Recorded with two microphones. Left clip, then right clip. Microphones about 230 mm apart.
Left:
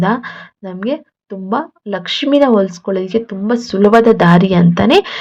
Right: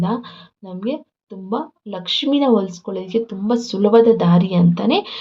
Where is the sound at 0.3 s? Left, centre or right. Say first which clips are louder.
Left 8 dB; left.